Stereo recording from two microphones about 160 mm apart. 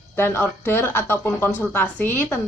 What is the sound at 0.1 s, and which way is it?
Speech, 15° left (ahead or behind).